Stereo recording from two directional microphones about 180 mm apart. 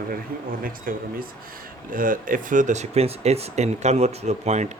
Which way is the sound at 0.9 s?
50° right (ahead or behind).